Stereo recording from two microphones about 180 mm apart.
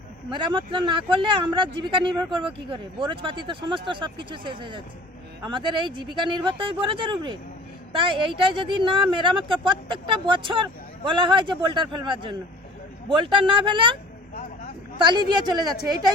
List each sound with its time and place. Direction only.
0.3 s speech: 25° right (ahead or behind)